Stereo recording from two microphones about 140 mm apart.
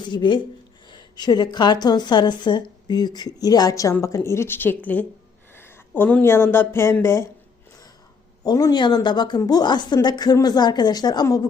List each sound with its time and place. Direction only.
0.0 s a woman's voice: 35° left (ahead or behind); by 7.3 s 20° left (ahead or behind)
8.4 s speech: 30° left (ahead or behind)